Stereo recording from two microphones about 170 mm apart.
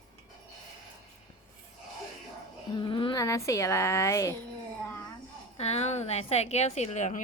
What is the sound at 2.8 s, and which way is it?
Speech, 30° left (ahead or behind).